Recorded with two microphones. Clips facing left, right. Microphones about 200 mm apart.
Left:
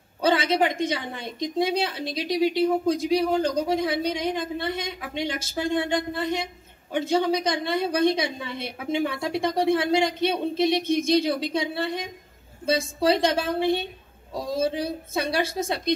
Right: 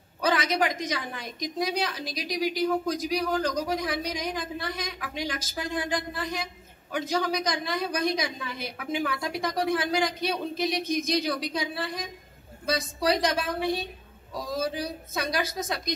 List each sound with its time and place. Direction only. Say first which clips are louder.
0.2 s a woman's voice: left 4 dB; 25° left (ahead or behind)